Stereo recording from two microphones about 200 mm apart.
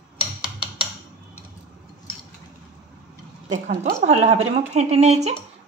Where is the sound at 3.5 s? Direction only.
35° right (ahead or behind).